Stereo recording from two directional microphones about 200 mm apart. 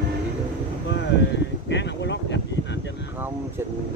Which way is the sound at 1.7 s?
60° left (ahead or behind).